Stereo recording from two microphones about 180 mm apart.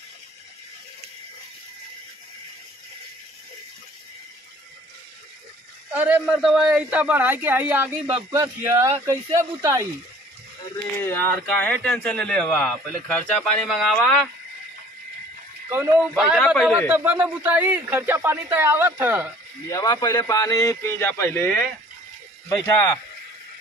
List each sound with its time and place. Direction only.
5.9 s a man's voice: 5° right (ahead or behind)
11.0 s speech: 10° left (ahead or behind)
16.2 s a man's voice: centre (ahead or behind)
19.7 s a man's voice: 25° left (ahead or behind)